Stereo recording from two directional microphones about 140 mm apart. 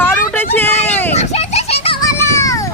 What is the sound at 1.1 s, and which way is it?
Children playing, 55° left (ahead or behind).